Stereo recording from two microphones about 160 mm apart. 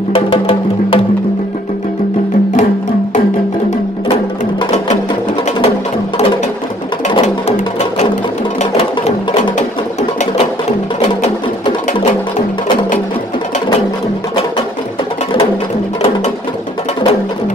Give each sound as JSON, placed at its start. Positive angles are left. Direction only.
{"t": 0.1, "sound": "music", "side_deg": 35}
{"t": 7.1, "sound": "music", "side_deg": 40}
{"t": 8.5, "sound": "music", "side_deg": 45}
{"t": 11.0, "sound": "music", "side_deg": 40}